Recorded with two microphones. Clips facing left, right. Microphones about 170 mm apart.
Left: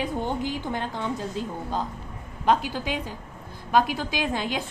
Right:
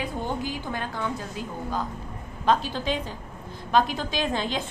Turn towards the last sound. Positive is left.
turn(degrees=10)  # may be behind; listen again after turning